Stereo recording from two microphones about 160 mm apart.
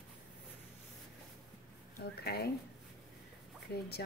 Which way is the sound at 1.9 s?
80° left.